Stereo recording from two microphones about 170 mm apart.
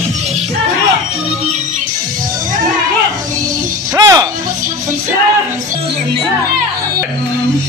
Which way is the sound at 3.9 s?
20° right (ahead or behind).